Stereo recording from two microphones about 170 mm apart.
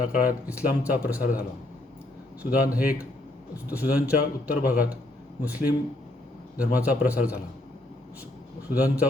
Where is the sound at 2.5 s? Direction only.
10° right (ahead or behind).